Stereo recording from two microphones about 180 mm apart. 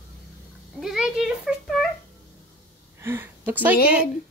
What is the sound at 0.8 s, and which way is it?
A woman's voice, 5° right (ahead or behind).